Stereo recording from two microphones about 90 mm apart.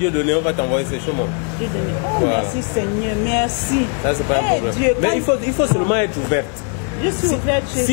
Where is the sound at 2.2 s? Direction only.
20° left (ahead or behind).